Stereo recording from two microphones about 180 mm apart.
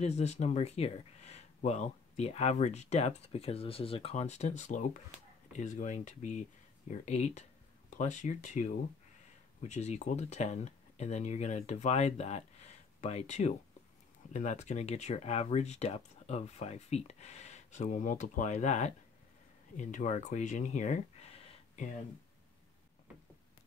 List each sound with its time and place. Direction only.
0.0 s speech: 40° left (ahead or behind)